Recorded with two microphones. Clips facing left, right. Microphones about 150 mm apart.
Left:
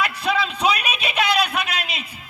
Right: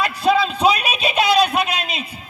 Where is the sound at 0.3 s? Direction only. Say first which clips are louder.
Right 6 dB; 30° right (ahead or behind).